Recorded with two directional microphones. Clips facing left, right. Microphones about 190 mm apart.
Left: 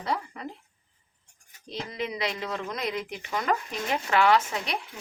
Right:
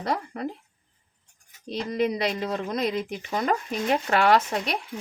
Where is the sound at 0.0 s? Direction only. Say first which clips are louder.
Right 3 dB; 45° right (ahead or behind).